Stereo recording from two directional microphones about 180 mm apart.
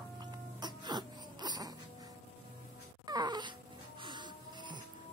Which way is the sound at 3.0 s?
25° right (ahead or behind).